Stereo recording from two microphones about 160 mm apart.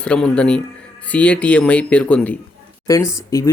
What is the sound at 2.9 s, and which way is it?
Speech, 20° left (ahead or behind).